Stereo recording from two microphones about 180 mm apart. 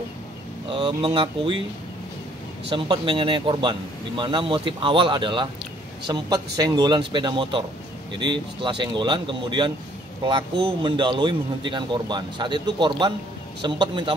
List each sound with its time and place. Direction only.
0.7 s a man's voice: 30° right (ahead or behind)
2.7 s a man's voice: 25° right (ahead or behind)